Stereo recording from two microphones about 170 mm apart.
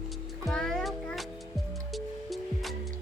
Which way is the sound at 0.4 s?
5° left (ahead or behind).